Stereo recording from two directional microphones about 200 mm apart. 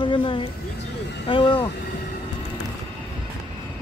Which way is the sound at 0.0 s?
25° left (ahead or behind).